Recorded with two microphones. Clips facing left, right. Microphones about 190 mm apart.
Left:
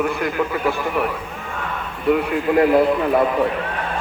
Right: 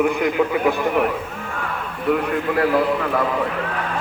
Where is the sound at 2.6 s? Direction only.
25° left (ahead or behind).